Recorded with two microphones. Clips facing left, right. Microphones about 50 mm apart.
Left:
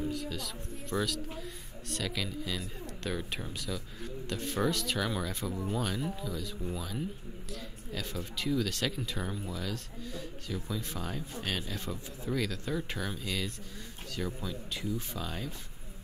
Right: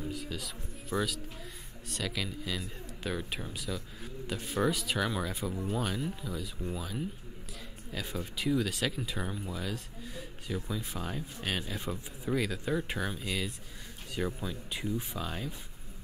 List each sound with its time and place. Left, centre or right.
0.0 s speech: centre